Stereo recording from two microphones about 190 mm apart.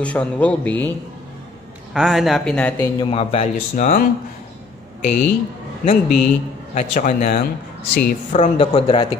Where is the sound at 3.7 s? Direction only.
45° left (ahead or behind).